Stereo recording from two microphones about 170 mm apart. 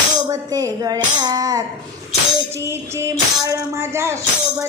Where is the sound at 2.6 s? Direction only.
15° right (ahead or behind).